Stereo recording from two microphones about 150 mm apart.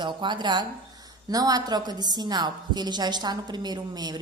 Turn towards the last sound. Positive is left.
turn(degrees=-25)  # may be behind; listen again after turning